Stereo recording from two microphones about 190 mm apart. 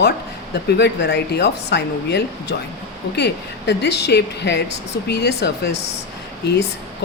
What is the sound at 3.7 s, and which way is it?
Speech, 60° left (ahead or behind).